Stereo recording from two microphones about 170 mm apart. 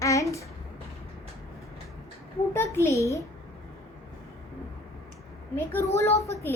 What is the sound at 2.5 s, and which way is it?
Speech, 15° left (ahead or behind).